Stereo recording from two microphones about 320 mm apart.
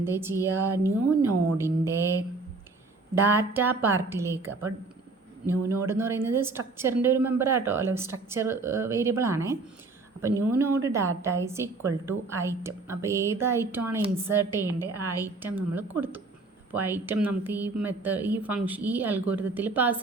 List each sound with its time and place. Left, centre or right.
0.0 s a woman's voice: centre
3.2 s a woman's voice: centre